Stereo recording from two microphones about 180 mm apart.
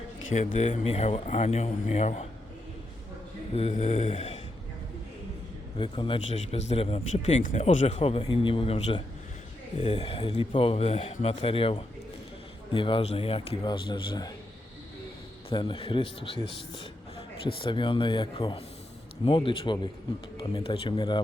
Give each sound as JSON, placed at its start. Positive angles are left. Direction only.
{"t": 0.3, "sound": "speech", "side_deg": 40}
{"t": 3.5, "sound": "speech", "side_deg": 35}
{"t": 5.7, "sound": "a man's voice", "side_deg": 25}
{"t": 15.4, "sound": "a man's voice", "side_deg": 25}
{"t": 17.4, "sound": "a man's voice", "side_deg": 25}